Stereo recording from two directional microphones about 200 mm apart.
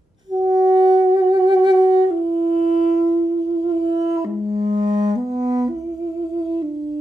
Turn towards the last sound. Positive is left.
turn(degrees=-20)  # may be behind; listen again after turning